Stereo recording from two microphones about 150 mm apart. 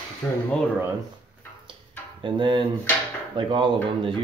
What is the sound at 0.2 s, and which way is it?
Speech, 10° left (ahead or behind).